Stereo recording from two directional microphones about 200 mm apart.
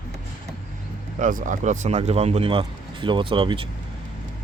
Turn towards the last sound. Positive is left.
turn(degrees=-25)  # may be behind; listen again after turning